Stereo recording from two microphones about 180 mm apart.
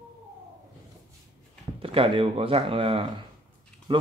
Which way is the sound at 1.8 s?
30° right (ahead or behind).